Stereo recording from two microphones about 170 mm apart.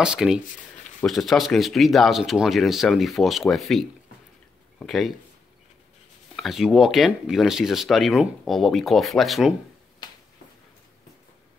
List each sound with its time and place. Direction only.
0.0 s speech: 5° right (ahead or behind)
6.3 s speech: centre (ahead or behind)
10.0 s finger snapping: 25° left (ahead or behind)